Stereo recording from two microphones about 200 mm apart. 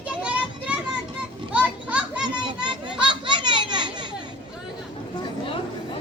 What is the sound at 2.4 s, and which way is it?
Children playing, 25° right (ahead or behind).